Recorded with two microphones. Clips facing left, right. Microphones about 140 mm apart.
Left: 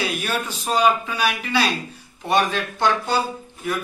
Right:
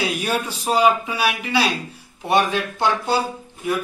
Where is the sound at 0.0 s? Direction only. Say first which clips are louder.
Right 2 dB; 15° right (ahead or behind).